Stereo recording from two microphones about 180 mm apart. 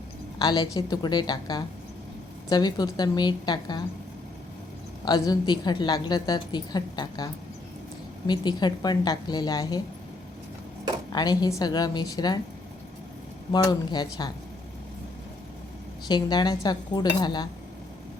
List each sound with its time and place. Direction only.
0.3 s a woman's voice: 20° left (ahead or behind)
5.0 s a woman's voice: 20° left (ahead or behind)
8.3 s a woman's voice: 25° left (ahead or behind)
11.1 s a woman's voice: 20° left (ahead or behind)
13.5 s a woman's voice: 20° left (ahead or behind)
16.0 s a woman's voice: 25° left (ahead or behind)